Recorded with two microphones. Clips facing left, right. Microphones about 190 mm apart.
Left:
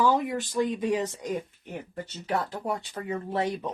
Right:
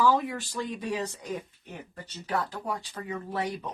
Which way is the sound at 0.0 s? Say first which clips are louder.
Left 1 dB; 20° left (ahead or behind).